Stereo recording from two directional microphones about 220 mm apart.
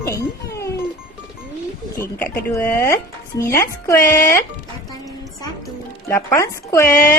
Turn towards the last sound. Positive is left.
turn(degrees=15)  # may be behind; listen again after turning